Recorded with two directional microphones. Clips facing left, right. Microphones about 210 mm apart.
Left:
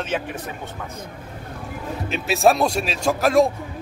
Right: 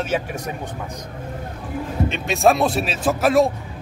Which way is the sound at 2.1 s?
Centre (ahead or behind).